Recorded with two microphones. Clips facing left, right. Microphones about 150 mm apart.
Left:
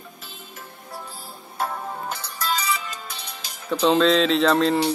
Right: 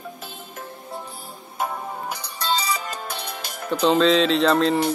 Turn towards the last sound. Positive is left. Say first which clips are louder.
# even
turn(degrees=0)  # may be behind; listen again after turning